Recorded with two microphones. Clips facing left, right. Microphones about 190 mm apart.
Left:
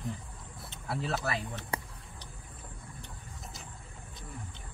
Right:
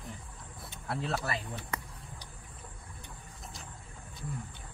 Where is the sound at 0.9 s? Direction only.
Centre (ahead or behind).